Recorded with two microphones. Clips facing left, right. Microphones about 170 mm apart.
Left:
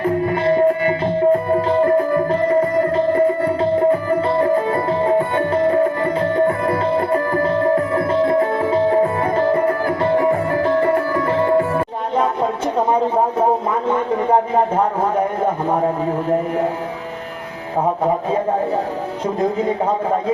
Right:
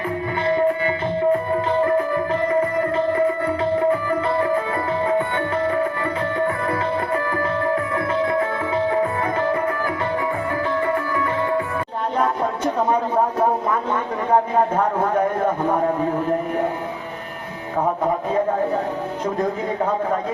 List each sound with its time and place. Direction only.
0.0 s music: 45° left (ahead or behind)